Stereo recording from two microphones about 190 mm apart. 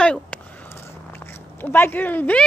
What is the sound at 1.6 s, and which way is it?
Speech, 10° left (ahead or behind).